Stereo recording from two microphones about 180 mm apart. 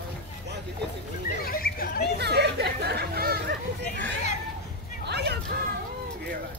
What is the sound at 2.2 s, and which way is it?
Chatter, 65° right (ahead or behind).